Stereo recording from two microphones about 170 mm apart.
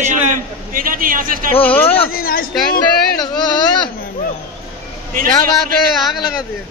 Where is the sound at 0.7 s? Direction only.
55° right (ahead or behind).